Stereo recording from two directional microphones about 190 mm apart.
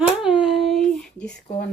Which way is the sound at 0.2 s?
5° right (ahead or behind).